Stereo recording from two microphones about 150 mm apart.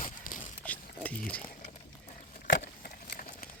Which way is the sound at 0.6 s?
10° left (ahead or behind).